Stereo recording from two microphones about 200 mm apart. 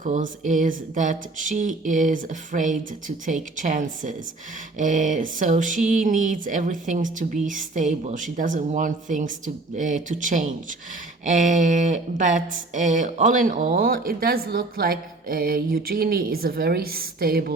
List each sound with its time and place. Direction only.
0.0 s speech: 40° right (ahead or behind)